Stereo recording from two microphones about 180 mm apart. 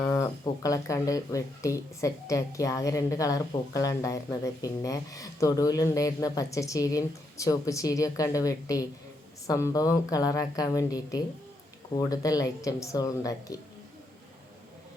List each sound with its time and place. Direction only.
0.0 s speech: 20° left (ahead or behind)